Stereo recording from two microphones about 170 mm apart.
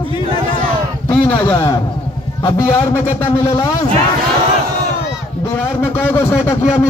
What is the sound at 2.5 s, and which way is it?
Speech, 25° left (ahead or behind).